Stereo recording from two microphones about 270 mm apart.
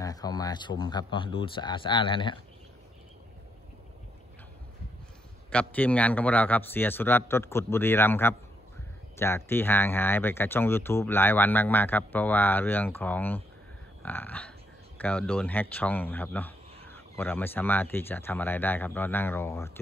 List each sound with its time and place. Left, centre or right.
0.0 s speech: centre
5.5 s speech: centre